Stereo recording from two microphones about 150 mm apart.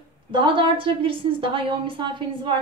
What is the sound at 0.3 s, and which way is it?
Speech, 35° right (ahead or behind).